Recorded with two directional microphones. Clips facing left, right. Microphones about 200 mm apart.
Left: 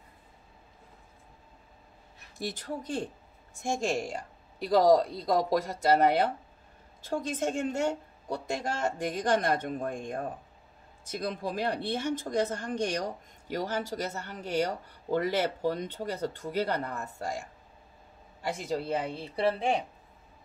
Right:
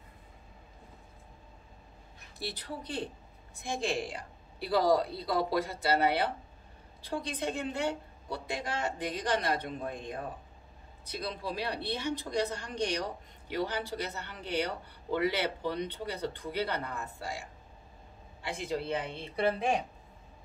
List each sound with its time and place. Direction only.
2.3 s a woman's voice: 45° left (ahead or behind); by 19.7 s 30° left (ahead or behind)